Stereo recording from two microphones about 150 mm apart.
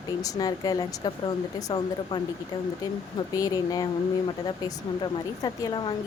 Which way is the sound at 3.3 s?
25° left (ahead or behind).